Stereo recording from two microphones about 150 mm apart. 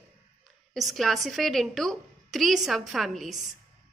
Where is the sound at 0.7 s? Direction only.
Centre (ahead or behind).